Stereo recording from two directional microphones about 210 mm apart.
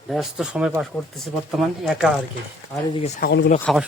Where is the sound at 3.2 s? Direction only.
55° left (ahead or behind).